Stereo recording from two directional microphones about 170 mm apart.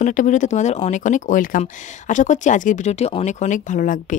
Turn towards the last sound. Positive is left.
turn(degrees=50)  # may be behind; listen again after turning